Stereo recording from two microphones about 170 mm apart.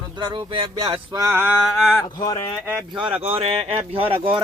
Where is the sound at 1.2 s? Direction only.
15° right (ahead or behind).